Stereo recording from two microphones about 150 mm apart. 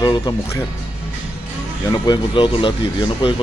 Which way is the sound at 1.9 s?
30° left (ahead or behind).